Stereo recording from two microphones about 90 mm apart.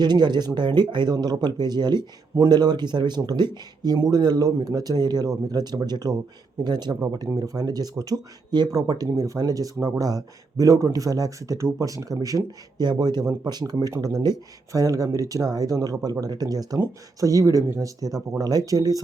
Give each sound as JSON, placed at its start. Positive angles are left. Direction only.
{"t": 0.0, "sound": "speech", "side_deg": -55}
{"t": 3.9, "sound": "speech", "side_deg": -35}
{"t": 12.8, "sound": "speech", "side_deg": -50}